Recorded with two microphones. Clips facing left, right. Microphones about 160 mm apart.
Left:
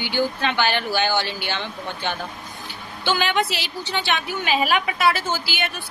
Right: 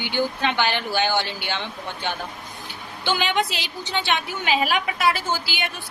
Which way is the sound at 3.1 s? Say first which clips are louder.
Left 1 dB; 15° right (ahead or behind).